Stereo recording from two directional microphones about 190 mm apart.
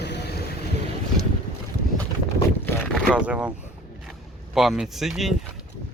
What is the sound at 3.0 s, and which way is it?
Speech, 5° right (ahead or behind).